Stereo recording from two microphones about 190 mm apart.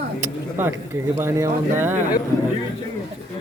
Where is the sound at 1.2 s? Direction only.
15° right (ahead or behind).